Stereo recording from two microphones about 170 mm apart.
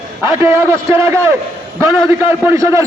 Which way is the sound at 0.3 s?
15° right (ahead or behind).